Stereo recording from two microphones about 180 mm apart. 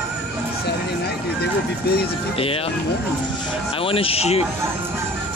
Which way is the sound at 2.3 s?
30° left (ahead or behind).